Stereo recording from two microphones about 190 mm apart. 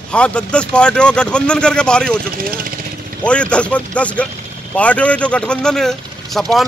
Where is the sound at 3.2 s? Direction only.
5° left (ahead or behind).